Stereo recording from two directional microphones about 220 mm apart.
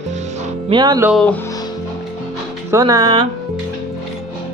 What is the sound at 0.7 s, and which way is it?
Speech, 20° right (ahead or behind).